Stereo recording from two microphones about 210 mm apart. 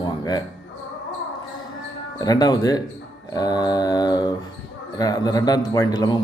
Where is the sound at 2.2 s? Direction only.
20° left (ahead or behind).